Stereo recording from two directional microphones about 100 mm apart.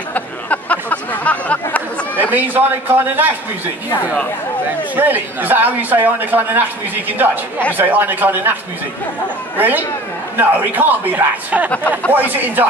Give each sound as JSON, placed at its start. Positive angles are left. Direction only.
{"t": 0.1, "sound": "a sound", "side_deg": 15}
{"t": 2.3, "sound": "speech", "side_deg": -20}
{"t": 4.9, "sound": "speech", "side_deg": -20}
{"t": 9.6, "sound": "speech", "side_deg": -20}